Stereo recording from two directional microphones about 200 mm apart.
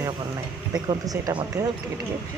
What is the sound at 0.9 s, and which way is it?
Speech, 20° right (ahead or behind).